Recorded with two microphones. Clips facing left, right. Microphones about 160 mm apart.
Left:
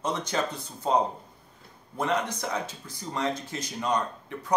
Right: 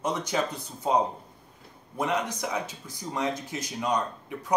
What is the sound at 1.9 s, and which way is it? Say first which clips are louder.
Speech: even; 15° right (ahead or behind).